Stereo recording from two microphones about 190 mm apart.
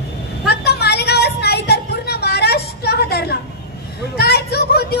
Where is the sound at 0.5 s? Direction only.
60° left (ahead or behind).